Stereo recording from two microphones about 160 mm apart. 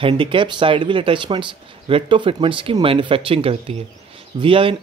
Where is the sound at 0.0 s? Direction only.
30° right (ahead or behind).